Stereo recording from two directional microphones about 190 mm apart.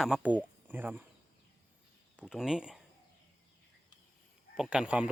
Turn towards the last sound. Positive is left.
turn(degrees=-5)  # may be behind; listen again after turning